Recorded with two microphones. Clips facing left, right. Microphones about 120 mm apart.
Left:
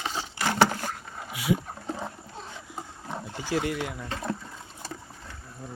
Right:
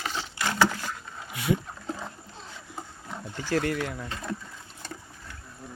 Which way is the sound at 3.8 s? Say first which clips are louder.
Right 1 dB; 15° left (ahead or behind).